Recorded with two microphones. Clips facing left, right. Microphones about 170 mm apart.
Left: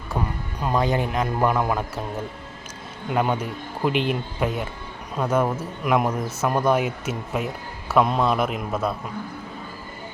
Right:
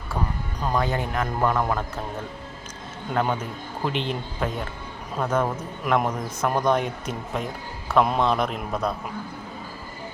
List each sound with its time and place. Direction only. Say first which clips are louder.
0.8 s a man's voice: left 4 dB; 20° left (ahead or behind)
3.1 s a man's voice: left 2 dB; 10° left (ahead or behind)